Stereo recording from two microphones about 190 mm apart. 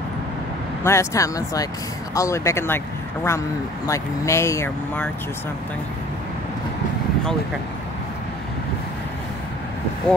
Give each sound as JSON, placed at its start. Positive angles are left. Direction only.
{"t": 0.8, "sound": "speech", "side_deg": 15}